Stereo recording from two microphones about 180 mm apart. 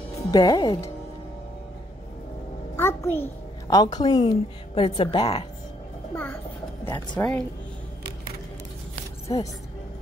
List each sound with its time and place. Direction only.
0.3 s speech: 20° left (ahead or behind)
2.7 s a sound: 15° left (ahead or behind)
3.6 s speech: 20° left (ahead or behind)
6.1 s a child's voice: 10° left (ahead or behind)
9.3 s speech: 20° left (ahead or behind)